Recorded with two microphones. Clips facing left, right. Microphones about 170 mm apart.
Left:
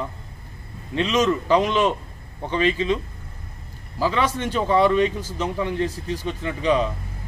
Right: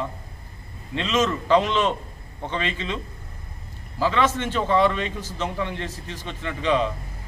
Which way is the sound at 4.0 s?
10° left (ahead or behind).